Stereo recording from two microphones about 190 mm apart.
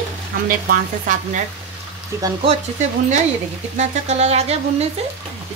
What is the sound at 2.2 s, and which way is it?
Frying, 30° right (ahead or behind).